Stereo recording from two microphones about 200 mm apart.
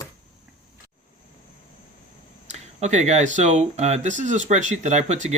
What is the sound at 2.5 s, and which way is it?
Speech, 35° right (ahead or behind).